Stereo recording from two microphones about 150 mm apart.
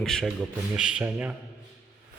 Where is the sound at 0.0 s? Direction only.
Centre (ahead or behind).